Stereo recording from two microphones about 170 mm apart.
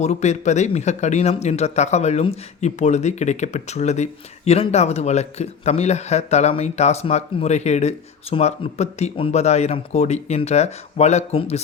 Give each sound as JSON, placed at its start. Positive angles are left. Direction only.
{"t": 0.0, "sound": "speech", "side_deg": 40}